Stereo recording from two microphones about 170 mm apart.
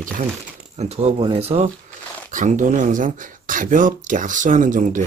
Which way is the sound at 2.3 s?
45° right (ahead or behind).